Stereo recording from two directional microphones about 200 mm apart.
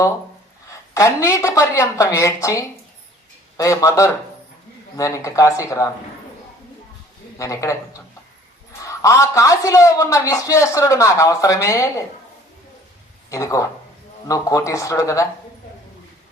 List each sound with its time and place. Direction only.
0.7 s a man's voice: 15° left (ahead or behind)
7.3 s a man's voice: 15° left (ahead or behind)
13.3 s a man's voice: 15° left (ahead or behind)